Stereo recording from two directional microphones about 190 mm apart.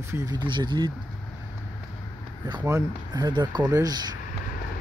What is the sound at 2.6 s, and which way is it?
Speech, 15° right (ahead or behind).